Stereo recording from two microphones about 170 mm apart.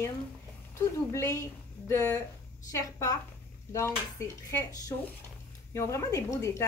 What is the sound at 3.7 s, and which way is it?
Dishes, 15° left (ahead or behind).